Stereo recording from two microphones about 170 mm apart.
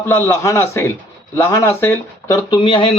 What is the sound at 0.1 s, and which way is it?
A man's voice, 15° left (ahead or behind).